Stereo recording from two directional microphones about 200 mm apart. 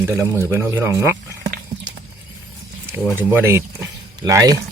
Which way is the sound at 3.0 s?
10° right (ahead or behind).